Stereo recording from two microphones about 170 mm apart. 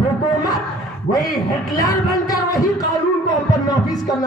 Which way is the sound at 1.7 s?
20° left (ahead or behind).